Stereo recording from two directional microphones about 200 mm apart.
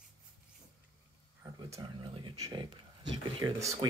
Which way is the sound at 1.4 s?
20° right (ahead or behind).